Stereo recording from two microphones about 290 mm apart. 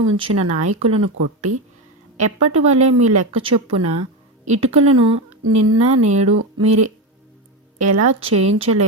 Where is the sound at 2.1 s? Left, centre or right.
Right.